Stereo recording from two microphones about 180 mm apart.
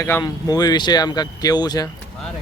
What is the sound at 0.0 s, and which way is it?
Speech, 20° left (ahead or behind).